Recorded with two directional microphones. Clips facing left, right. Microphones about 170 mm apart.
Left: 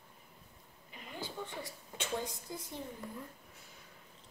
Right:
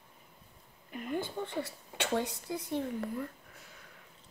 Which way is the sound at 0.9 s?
55° right (ahead or behind).